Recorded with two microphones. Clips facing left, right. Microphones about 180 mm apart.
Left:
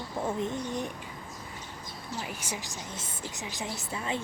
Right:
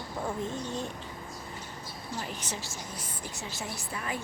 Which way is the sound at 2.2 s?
10° left (ahead or behind).